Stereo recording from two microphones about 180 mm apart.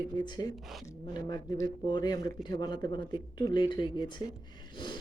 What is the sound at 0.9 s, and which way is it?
A woman's voice, 20° left (ahead or behind).